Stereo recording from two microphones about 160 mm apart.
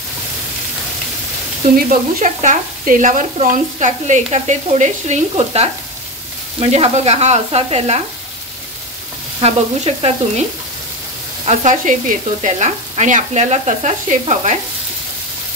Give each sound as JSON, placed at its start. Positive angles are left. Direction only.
{"t": 1.9, "sound": "speech", "side_deg": -50}
{"t": 6.6, "sound": "sizzle", "side_deg": -40}
{"t": 9.4, "sound": "sizzle", "side_deg": -40}
{"t": 11.4, "sound": "speech", "side_deg": -50}